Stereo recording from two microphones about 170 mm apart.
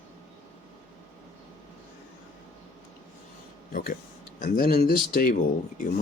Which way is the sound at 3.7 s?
55° left (ahead or behind).